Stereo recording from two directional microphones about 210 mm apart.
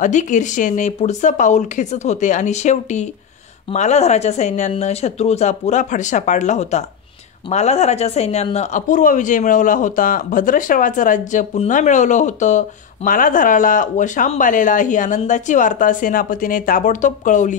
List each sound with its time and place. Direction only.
0.0 s speech: 35° left (ahead or behind)